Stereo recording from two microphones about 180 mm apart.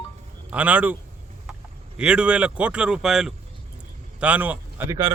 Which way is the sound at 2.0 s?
5° right (ahead or behind).